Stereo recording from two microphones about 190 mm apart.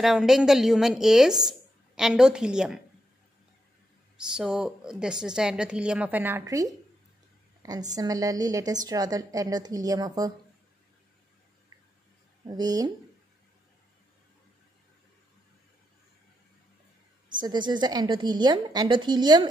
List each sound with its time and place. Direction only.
0.0 s a woman's voice: centre (ahead or behind)
4.3 s a woman's voice: 5° right (ahead or behind)
7.9 s a woman's voice: 20° right (ahead or behind)
12.4 s a woman's voice: 20° right (ahead or behind)
17.4 s a woman's voice: 25° right (ahead or behind)